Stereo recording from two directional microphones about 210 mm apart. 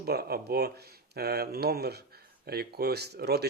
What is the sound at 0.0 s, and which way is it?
Speech, 50° right (ahead or behind).